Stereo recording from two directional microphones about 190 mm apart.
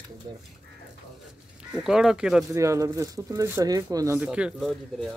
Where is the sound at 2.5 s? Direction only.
15° right (ahead or behind).